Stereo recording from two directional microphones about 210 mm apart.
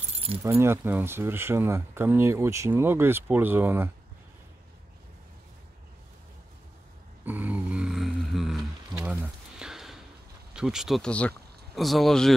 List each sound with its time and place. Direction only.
0.1 s keys jangling: 25° right (ahead or behind)
0.4 s speech: 15° right (ahead or behind)
7.2 s a sound: 10° right (ahead or behind)
10.5 s speech: 5° right (ahead or behind)